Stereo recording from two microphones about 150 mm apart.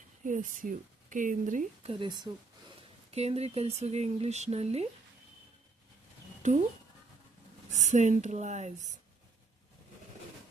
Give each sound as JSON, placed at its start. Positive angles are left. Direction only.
{"t": 0.3, "sound": "speech", "side_deg": -60}
{"t": 1.8, "sound": "speech", "side_deg": -35}
{"t": 3.1, "sound": "speech", "side_deg": -45}
{"t": 7.7, "sound": "speech", "side_deg": -55}